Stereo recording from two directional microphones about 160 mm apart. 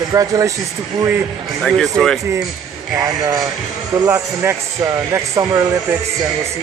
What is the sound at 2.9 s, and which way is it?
Speech, 20° right (ahead or behind).